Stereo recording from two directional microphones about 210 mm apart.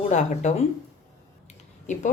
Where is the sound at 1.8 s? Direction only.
35° left (ahead or behind).